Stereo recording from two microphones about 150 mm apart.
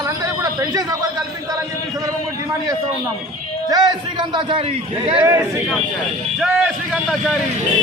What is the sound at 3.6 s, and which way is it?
Speech, 30° right (ahead or behind).